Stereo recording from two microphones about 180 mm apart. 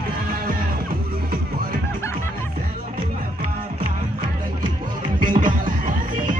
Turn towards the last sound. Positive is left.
turn(degrees=-50)  # may be behind; listen again after turning